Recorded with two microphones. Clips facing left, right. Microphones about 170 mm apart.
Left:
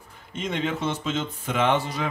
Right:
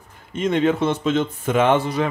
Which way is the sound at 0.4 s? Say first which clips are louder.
Right 9 dB; 55° right (ahead or behind).